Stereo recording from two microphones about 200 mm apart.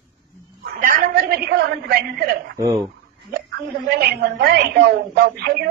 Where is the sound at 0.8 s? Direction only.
45° right (ahead or behind).